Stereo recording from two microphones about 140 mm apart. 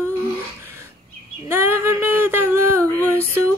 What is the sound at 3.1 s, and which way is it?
Music, 20° right (ahead or behind).